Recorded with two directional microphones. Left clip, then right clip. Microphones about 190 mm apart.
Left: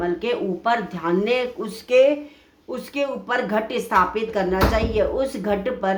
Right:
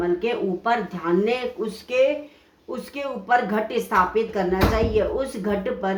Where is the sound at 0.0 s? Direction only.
20° left (ahead or behind).